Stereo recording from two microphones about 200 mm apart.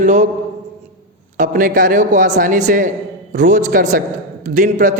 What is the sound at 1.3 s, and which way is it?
Speech, 40° right (ahead or behind).